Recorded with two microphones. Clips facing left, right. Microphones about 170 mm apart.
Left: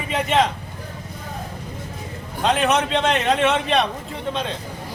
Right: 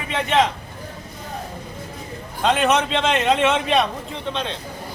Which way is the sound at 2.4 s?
Centre (ahead or behind).